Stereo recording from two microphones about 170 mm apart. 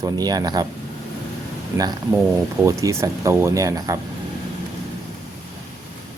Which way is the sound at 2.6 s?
15° right (ahead or behind).